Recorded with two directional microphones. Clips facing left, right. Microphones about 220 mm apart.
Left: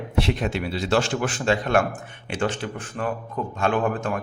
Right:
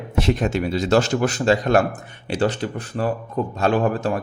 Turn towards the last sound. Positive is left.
turn(degrees=-35)  # may be behind; listen again after turning